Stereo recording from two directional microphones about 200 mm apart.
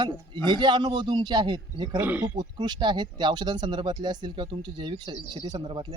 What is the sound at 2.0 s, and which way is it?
Speech, 10° right (ahead or behind).